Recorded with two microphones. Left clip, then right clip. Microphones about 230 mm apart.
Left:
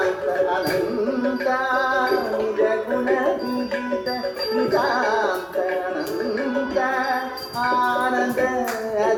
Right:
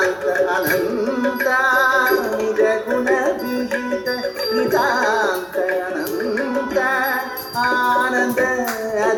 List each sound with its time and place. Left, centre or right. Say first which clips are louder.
2.6 s music: right 4 dB; right
4.5 s music: right 3 dB; right
7.6 s music: right 3 dB; right